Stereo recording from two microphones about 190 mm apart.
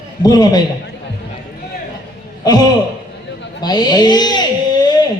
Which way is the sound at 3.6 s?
20° left (ahead or behind).